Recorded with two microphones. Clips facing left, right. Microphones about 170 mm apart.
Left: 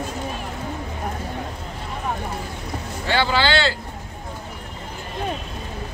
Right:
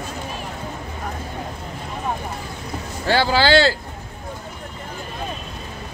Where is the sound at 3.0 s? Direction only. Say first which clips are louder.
Right 3 dB; 40° right (ahead or behind).